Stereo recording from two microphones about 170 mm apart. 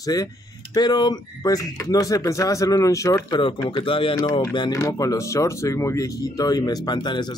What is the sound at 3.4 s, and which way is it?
Speech, 30° left (ahead or behind).